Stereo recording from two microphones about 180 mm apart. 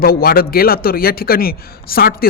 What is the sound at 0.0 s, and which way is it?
A man's voice, 55° left (ahead or behind).